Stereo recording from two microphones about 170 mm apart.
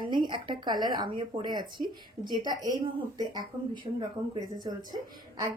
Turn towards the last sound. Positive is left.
turn(degrees=-25)  # may be behind; listen again after turning